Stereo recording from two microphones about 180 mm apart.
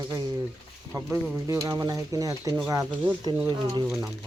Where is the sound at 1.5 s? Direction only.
20° right (ahead or behind).